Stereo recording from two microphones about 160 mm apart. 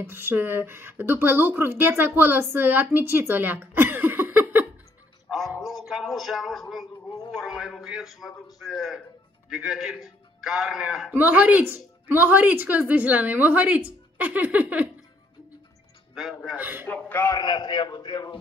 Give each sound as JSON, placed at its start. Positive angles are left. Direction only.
{"t": 0.1, "sound": "a woman's voice", "side_deg": -15}
{"t": 5.6, "sound": "speech", "side_deg": 0}
{"t": 7.1, "sound": "speech", "side_deg": 25}
{"t": 7.3, "sound": "a man's voice", "side_deg": 0}
{"t": 16.2, "sound": "a man's voice", "side_deg": 0}
{"t": 16.5, "sound": "a woman's voice", "side_deg": -10}
{"t": 16.8, "sound": "a man's voice", "side_deg": 15}